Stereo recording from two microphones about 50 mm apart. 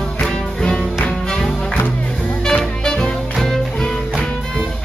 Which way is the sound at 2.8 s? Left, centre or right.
Centre.